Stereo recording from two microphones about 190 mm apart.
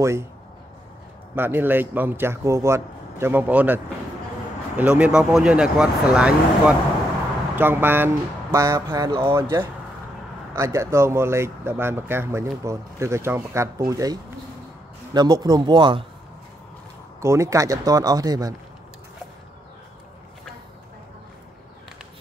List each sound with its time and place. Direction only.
1.3 s speech: 10° right (ahead or behind)
15.1 s speech: 20° right (ahead or behind)
17.2 s speech: 15° right (ahead or behind)